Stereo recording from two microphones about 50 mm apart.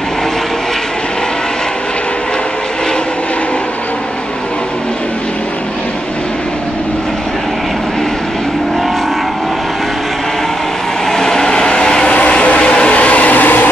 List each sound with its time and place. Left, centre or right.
11.1 s vehicle: centre; by 13.7 s left